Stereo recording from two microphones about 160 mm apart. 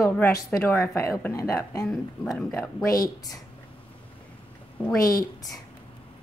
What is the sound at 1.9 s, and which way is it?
Speech, centre (ahead or behind).